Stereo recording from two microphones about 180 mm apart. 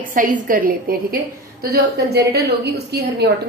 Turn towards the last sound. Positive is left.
turn(degrees=-65)  # may be behind; listen again after turning